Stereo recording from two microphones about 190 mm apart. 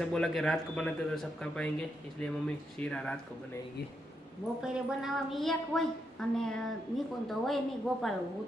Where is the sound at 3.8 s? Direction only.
60° left (ahead or behind).